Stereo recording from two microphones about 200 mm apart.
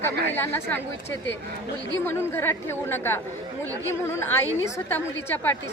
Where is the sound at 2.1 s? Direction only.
10° left (ahead or behind).